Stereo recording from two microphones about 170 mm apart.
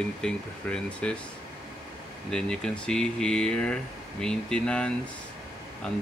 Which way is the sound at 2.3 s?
5° left (ahead or behind).